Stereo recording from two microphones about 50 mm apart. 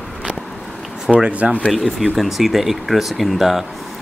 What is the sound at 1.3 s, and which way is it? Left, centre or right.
Speech, right.